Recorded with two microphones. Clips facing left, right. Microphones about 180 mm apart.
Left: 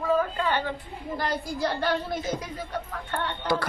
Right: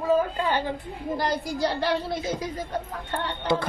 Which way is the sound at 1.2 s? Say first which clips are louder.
Right 2 dB; 35° right (ahead or behind).